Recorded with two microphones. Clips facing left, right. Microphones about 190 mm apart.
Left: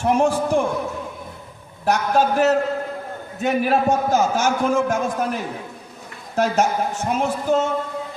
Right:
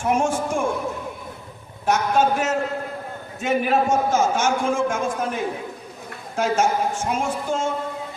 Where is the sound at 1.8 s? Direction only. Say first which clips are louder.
Left 1 dB; 35° left (ahead or behind).